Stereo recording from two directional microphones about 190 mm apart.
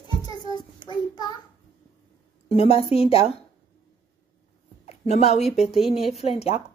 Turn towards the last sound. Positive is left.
turn(degrees=30)  # may be behind; listen again after turning